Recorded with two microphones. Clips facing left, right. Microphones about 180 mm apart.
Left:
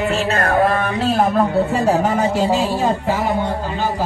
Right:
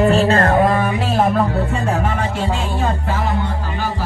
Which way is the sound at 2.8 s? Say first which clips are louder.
Left 3 dB; 20° left (ahead or behind).